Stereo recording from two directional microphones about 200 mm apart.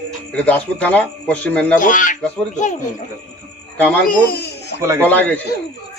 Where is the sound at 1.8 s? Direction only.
40° left (ahead or behind).